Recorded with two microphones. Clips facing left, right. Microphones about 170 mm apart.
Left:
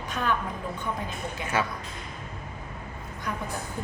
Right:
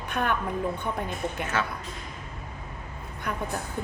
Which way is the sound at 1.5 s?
10° left (ahead or behind).